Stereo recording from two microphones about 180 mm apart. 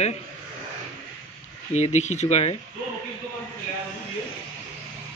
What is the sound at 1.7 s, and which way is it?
Speech, 40° left (ahead or behind).